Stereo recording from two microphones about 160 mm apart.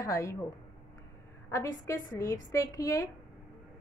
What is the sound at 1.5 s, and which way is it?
A woman's voice, 20° left (ahead or behind).